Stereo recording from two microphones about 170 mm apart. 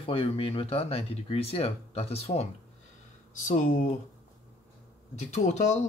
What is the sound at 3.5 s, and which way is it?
Speech, 50° left (ahead or behind).